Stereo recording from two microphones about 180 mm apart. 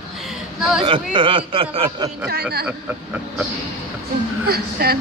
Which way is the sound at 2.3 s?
60° right (ahead or behind).